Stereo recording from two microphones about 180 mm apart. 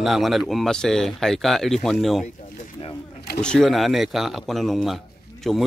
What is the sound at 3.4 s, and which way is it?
Speech, 5° left (ahead or behind).